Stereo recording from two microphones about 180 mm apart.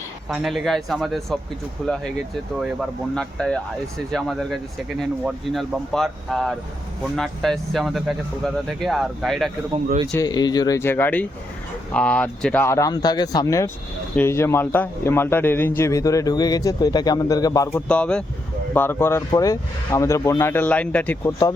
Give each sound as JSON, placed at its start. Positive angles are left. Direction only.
{"t": 0.3, "sound": "speech", "side_deg": 0}
{"t": 3.2, "sound": "speech", "side_deg": 5}
{"t": 10.1, "sound": "a man's voice", "side_deg": 20}